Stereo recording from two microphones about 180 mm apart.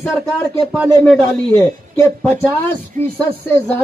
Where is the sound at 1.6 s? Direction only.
15° left (ahead or behind).